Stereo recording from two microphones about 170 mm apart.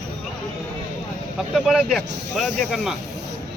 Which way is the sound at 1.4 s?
Centre (ahead or behind).